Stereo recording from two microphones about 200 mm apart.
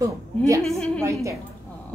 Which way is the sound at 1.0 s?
15° right (ahead or behind).